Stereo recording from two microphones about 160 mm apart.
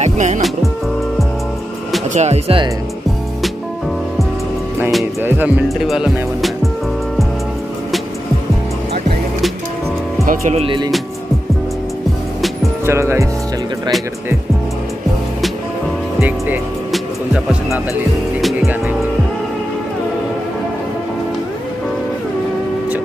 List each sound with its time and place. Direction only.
0.0 s music: 45° right (ahead or behind)
2.1 s speech: 40° right (ahead or behind)
5.9 s speech: centre (ahead or behind)
10.2 s speech: 60° right (ahead or behind)
10.5 s speech: 35° right (ahead or behind)
12.8 s speech: 15° right (ahead or behind)
16.2 s speech: 10° right (ahead or behind)
16.9 s music: 5° right (ahead or behind)